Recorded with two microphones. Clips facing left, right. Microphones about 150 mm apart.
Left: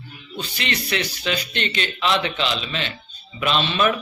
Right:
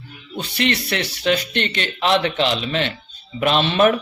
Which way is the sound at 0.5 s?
55° right (ahead or behind).